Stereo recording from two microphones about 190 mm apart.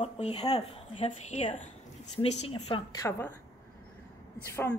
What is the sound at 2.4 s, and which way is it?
Speech, 30° left (ahead or behind).